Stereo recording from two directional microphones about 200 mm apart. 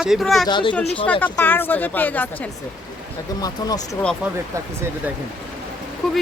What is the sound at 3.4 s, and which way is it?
Speech, 20° left (ahead or behind).